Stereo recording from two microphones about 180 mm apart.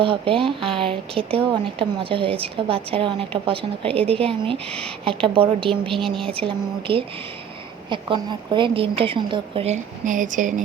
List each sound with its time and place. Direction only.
0.0 s a woman's voice: 30° right (ahead or behind)
6.0 s a woman's voice: centre (ahead or behind)
6.3 s a woman's voice: 30° right (ahead or behind); by 10.5 s 45° right (ahead or behind)